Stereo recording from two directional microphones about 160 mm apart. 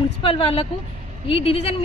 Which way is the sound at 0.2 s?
35° left (ahead or behind).